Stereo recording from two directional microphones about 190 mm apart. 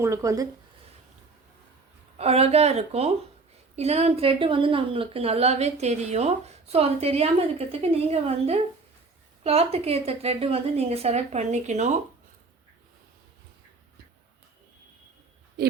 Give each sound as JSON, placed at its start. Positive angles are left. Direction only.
{"t": 0.0, "sound": "speech", "side_deg": -15}
{"t": 2.1, "sound": "speech", "side_deg": -30}
{"t": 15.6, "sound": "owl", "side_deg": -55}